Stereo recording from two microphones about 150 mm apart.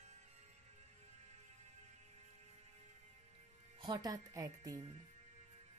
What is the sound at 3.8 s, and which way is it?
Speech, 30° right (ahead or behind).